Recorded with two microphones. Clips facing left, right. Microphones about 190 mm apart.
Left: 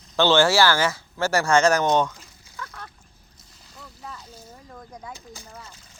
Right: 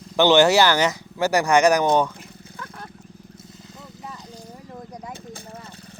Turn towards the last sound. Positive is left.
turn(degrees=-55)  # may be behind; listen again after turning